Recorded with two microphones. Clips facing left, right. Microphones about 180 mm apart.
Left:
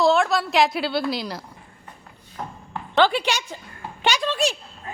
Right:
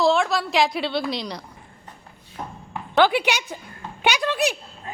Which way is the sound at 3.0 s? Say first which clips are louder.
Right 1 dB; 15° right (ahead or behind).